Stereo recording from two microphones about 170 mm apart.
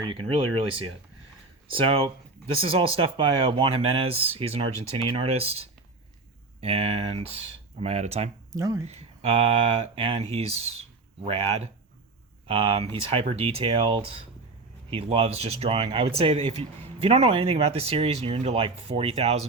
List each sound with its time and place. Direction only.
0.0 s a sound: 30° right (ahead or behind)
1.7 s speech: 30° right (ahead or behind)
8.5 s speech: 20° right (ahead or behind)
8.9 s speech: 40° right (ahead or behind)